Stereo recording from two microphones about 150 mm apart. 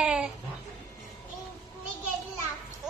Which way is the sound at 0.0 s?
5° right (ahead or behind).